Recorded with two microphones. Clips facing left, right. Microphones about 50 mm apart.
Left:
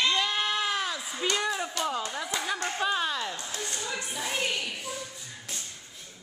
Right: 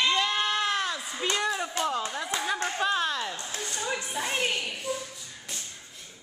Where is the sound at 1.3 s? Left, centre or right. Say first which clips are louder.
Right 1 dB; centre.